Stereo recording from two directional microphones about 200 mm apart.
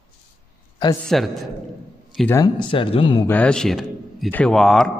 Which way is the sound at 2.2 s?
20° left (ahead or behind).